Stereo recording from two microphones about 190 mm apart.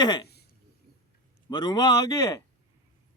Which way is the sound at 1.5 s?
20° left (ahead or behind).